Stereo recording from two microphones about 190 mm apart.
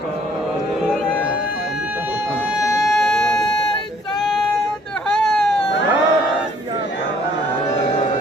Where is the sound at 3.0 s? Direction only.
5° left (ahead or behind).